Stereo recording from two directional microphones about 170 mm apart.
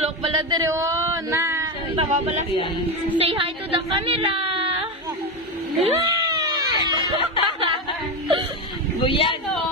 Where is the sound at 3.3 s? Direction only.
30° right (ahead or behind).